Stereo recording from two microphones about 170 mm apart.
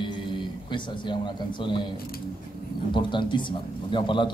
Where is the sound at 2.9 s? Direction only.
30° left (ahead or behind).